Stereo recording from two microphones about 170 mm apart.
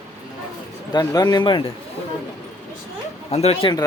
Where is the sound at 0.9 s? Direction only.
25° left (ahead or behind).